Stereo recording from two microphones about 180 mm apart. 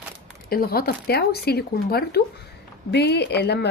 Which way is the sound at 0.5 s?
55° left (ahead or behind).